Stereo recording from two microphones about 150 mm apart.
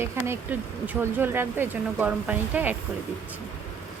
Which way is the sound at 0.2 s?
15° right (ahead or behind).